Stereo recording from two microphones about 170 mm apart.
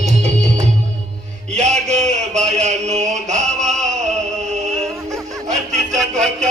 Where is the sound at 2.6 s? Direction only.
40° right (ahead or behind).